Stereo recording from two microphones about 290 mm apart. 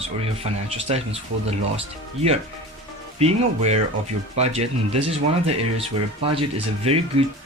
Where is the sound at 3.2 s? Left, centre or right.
Right.